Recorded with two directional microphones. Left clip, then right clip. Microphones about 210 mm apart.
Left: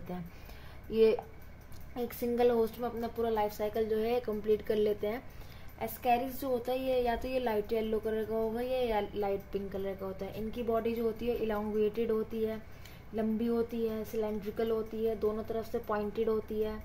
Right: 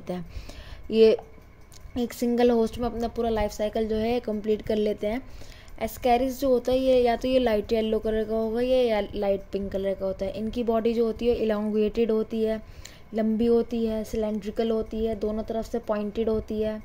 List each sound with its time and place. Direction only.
0.1 s a woman's voice: 40° right (ahead or behind)